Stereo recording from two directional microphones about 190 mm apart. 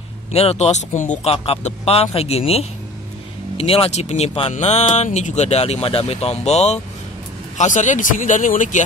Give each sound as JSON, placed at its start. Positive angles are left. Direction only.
{"t": 0.3, "sound": "speech", "side_deg": 30}